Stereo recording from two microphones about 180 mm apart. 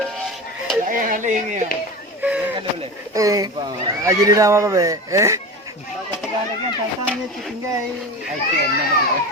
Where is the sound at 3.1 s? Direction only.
20° right (ahead or behind).